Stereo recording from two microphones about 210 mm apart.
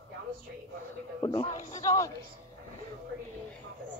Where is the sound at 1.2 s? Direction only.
25° left (ahead or behind).